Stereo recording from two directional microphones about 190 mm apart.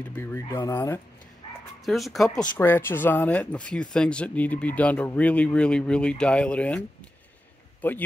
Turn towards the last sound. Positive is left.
turn(degrees=10)  # may be behind; listen again after turning